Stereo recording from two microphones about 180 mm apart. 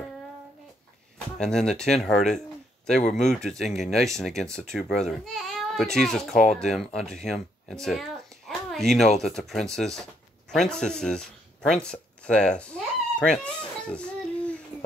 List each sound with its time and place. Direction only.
1.4 s a child's voice: 5° left (ahead or behind)
6.3 s speech: 40° left (ahead or behind)
6.6 s speech: centre (ahead or behind)
8.5 s a sound: centre (ahead or behind)
9.2 s speech: centre (ahead or behind)